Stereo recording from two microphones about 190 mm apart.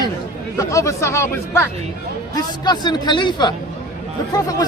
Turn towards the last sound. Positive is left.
turn(degrees=20)  # may be behind; listen again after turning